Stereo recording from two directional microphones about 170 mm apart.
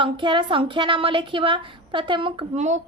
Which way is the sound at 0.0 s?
30° right (ahead or behind).